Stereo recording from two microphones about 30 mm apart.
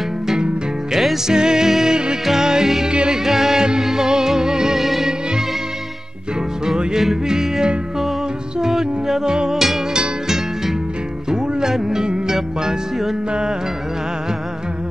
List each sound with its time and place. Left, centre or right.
0.9 s music: centre
2.9 s music: right
3.3 s music: centre
4.8 s music: centre
7.0 s music: centre